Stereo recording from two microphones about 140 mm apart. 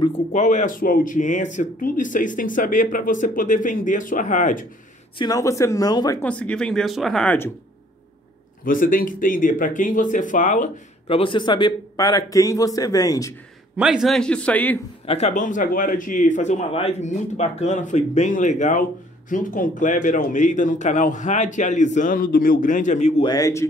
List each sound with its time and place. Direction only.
0.3 s speech: 60° left (ahead or behind)
5.2 s a man's voice: 25° left (ahead or behind)
6.2 s speech: 10° left (ahead or behind)
8.6 s speech: 75° left (ahead or behind)
11.1 s a man's voice: 40° left (ahead or behind)
13.7 s a man's voice: 5° right (ahead or behind); by 14.8 s 10° left (ahead or behind)
15.0 s speech: 50° left (ahead or behind)
23.2 s a man's voice: 25° left (ahead or behind)